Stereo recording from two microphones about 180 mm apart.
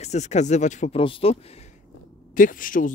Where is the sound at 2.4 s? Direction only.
50° left (ahead or behind).